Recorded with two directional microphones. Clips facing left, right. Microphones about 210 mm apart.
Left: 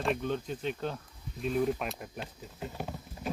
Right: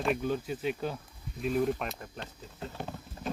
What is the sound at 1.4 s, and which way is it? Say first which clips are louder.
Speech: right 1 dB; centre (ahead or behind).